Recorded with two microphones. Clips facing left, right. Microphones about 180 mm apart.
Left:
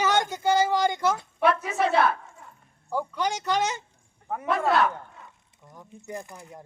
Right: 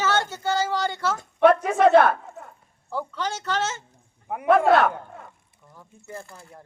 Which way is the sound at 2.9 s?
15° left (ahead or behind).